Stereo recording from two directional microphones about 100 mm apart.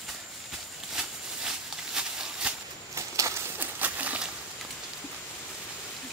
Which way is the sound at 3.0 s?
30° right (ahead or behind).